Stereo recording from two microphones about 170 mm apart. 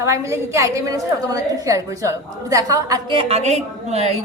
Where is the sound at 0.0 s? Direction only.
15° right (ahead or behind).